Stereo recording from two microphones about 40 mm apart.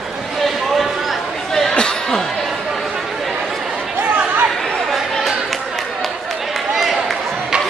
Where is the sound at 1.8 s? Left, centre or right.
Centre.